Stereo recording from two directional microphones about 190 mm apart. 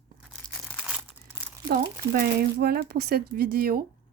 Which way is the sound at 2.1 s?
55° right (ahead or behind).